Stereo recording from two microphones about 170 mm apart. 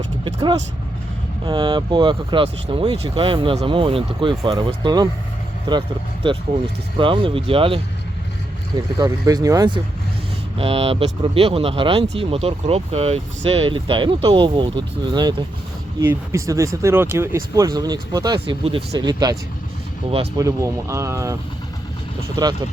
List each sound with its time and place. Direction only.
0.3 s vehicle: 35° right (ahead or behind)
1.5 s speech: 30° right (ahead or behind)
7.0 s speech: 30° right (ahead or behind)
9.0 s speech: 20° right (ahead or behind)